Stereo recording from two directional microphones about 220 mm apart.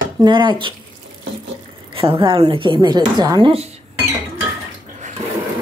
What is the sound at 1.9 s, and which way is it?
Speech, 25° right (ahead or behind).